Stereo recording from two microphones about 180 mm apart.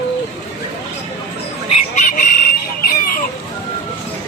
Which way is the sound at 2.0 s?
45° left (ahead or behind).